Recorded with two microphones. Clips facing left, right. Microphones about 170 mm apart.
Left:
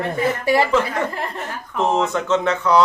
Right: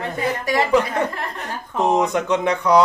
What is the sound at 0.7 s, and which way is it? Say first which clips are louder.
A man's voice: right 1 dB; 15° right (ahead or behind).